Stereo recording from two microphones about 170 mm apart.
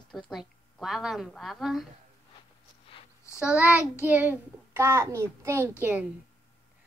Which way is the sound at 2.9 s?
35° left (ahead or behind).